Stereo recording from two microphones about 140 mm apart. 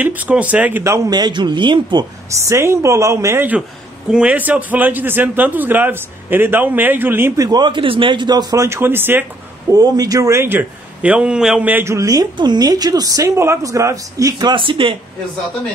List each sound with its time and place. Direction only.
0.0 s a man's voice: 10° right (ahead or behind); by 2.0 s 35° right (ahead or behind)
2.4 s a man's voice: 20° right (ahead or behind)
7.4 s a man's voice: 30° right (ahead or behind); by 9.2 s 15° right (ahead or behind)
9.7 s a man's voice: 25° right (ahead or behind)
14.5 s speech: 40° right (ahead or behind)